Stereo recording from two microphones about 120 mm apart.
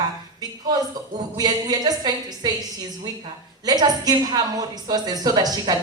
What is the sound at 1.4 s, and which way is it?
A woman's voice, 35° right (ahead or behind).